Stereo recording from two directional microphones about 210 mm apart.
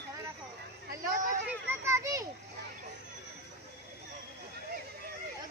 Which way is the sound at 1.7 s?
15° right (ahead or behind).